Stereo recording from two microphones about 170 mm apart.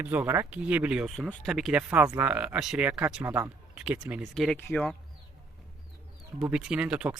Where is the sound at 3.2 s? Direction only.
15° right (ahead or behind).